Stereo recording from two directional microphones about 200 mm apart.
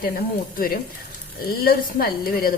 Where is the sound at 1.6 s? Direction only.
50° left (ahead or behind).